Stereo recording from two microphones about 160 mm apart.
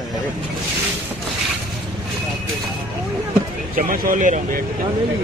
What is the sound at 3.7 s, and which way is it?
Speech, 60° right (ahead or behind).